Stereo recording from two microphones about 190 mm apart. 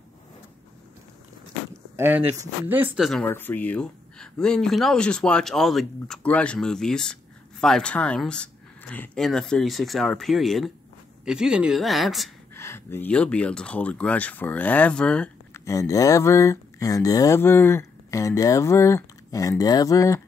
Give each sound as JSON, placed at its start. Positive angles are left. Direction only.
{"t": 2.0, "sound": "speech", "side_deg": -10}
{"t": 3.0, "sound": "speech", "side_deg": 0}
{"t": 12.5, "sound": "speech", "side_deg": 10}